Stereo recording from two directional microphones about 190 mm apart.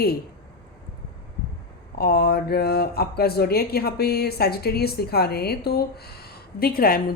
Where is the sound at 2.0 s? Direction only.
55° left (ahead or behind).